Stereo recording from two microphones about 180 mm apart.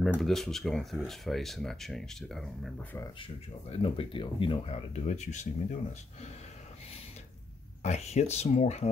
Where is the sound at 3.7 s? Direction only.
30° left (ahead or behind).